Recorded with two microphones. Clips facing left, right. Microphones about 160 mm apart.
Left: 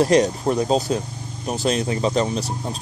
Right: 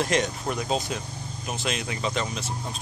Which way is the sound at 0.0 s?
35° left (ahead or behind).